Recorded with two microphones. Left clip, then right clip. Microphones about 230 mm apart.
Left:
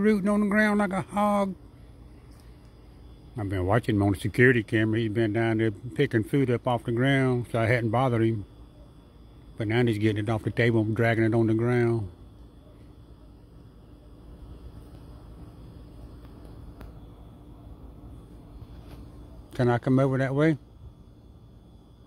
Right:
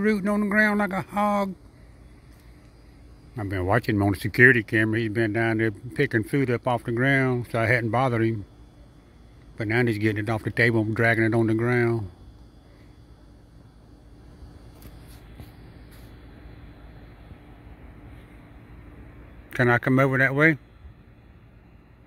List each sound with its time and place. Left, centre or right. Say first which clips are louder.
0.0 s speech: even; centre
3.3 s speech: right 2 dB; centre
9.6 s speech: right 2 dB; centre
19.5 s speech: right 4 dB; centre